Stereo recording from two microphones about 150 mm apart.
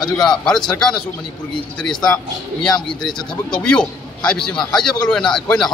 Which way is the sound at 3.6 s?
5° left (ahead or behind).